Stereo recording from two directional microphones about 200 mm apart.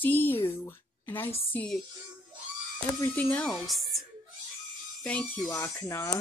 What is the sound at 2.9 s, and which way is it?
Speech, 5° left (ahead or behind).